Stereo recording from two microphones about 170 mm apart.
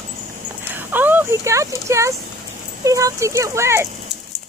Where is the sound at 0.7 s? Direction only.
10° right (ahead or behind).